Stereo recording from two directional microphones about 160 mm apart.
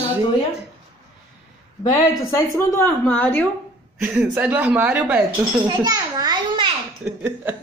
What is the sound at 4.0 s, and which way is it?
Speech, 5° right (ahead or behind).